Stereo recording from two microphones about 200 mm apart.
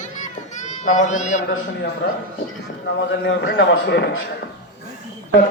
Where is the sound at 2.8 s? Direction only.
60° left (ahead or behind).